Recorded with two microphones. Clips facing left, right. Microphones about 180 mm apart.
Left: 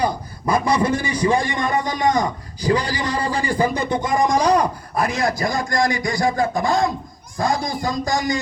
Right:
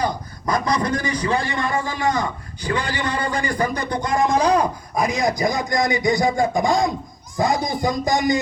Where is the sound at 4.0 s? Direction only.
Centre (ahead or behind).